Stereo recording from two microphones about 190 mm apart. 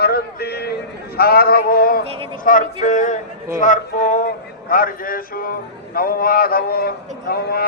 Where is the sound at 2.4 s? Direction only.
45° left (ahead or behind).